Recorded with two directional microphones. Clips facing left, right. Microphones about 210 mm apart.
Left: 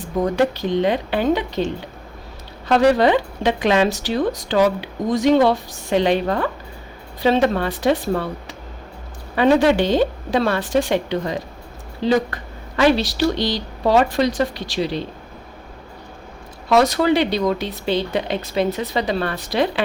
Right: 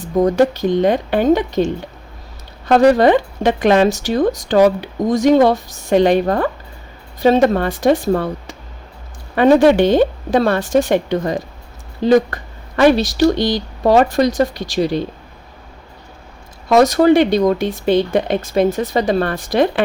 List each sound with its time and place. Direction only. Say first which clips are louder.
0.3 s speech: right 4 dB; 45° right (ahead or behind)
16.6 s speech: right 5 dB; 45° right (ahead or behind)